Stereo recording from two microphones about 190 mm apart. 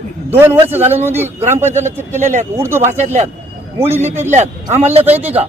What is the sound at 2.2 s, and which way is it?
Speech, 40° right (ahead or behind).